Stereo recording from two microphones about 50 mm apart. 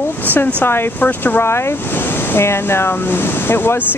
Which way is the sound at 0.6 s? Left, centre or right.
Left.